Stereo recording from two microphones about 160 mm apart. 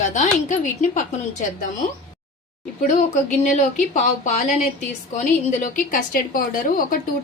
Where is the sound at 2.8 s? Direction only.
55° left (ahead or behind).